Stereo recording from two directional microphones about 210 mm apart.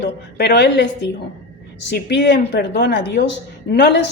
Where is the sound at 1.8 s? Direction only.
55° left (ahead or behind).